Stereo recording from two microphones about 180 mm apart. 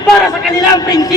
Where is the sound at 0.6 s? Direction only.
20° left (ahead or behind).